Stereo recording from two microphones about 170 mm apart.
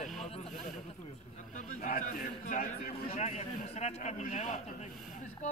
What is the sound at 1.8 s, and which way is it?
Speech, 55° left (ahead or behind).